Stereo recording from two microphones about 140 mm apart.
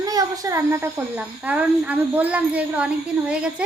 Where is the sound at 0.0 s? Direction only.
25° right (ahead or behind).